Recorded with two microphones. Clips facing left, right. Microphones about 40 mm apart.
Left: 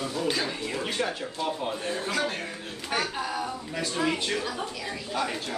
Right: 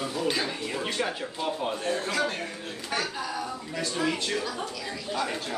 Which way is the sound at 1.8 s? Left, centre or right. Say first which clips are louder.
Right 1 dB; centre.